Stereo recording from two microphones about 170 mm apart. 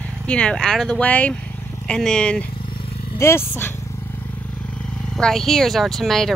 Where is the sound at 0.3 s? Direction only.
5° left (ahead or behind).